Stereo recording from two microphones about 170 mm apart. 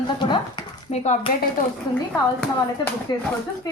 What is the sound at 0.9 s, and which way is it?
Speech, 40° left (ahead or behind).